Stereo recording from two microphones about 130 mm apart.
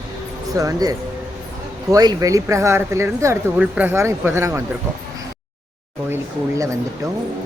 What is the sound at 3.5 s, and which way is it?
Speech, 10° right (ahead or behind).